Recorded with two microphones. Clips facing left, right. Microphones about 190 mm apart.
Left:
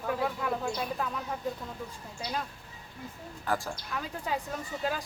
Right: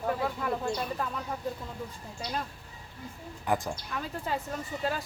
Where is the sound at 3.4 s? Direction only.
15° right (ahead or behind).